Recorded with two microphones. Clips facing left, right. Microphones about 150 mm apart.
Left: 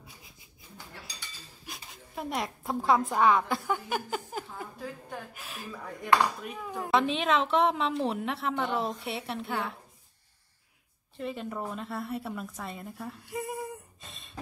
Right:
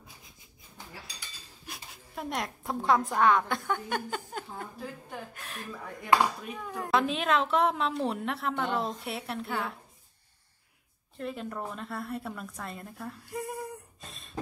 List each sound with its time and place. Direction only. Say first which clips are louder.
1.7 s a woman's voice: even; centre (ahead or behind)
11.1 s a woman's voice: left 1 dB; centre (ahead or behind)